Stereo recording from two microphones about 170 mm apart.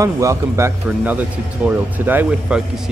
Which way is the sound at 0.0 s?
20° right (ahead or behind).